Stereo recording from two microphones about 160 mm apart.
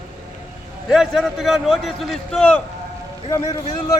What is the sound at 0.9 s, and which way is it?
A man's voice, centre (ahead or behind).